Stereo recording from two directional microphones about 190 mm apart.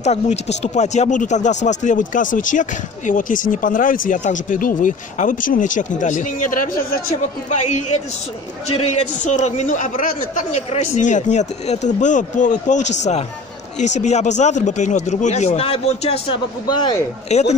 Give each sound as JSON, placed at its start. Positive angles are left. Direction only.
{"t": 0.0, "sound": "speech", "side_deg": 35}
{"t": 9.2, "sound": "speech", "side_deg": 40}
{"t": 17.3, "sound": "speech", "side_deg": 35}